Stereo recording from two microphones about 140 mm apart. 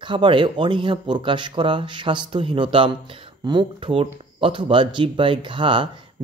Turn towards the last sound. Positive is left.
turn(degrees=-35)  # may be behind; listen again after turning